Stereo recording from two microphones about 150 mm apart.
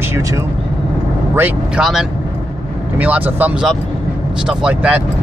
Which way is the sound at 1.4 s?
5° right (ahead or behind).